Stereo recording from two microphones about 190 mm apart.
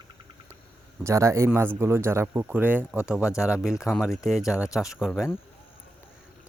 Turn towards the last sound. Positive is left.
turn(degrees=0)  # may be behind; listen again after turning